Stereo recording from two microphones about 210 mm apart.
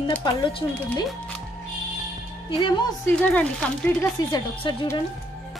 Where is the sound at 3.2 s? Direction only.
5° left (ahead or behind).